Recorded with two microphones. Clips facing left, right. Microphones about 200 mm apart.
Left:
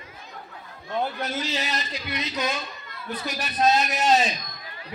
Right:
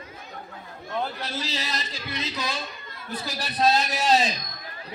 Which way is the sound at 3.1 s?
30° right (ahead or behind).